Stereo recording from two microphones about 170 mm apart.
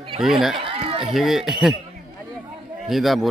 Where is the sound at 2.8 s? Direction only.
Centre (ahead or behind).